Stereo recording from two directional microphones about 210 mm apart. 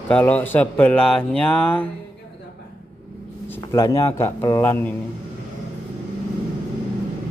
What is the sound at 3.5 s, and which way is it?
Speech, 15° left (ahead or behind).